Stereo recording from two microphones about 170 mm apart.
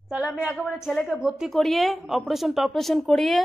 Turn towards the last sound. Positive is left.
turn(degrees=0)  # may be behind; listen again after turning